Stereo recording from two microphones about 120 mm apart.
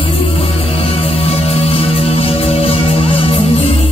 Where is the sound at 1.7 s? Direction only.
50° left (ahead or behind).